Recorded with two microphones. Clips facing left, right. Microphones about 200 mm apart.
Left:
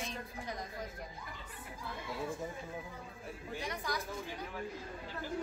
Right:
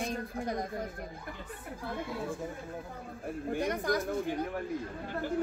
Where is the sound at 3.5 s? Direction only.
55° right (ahead or behind).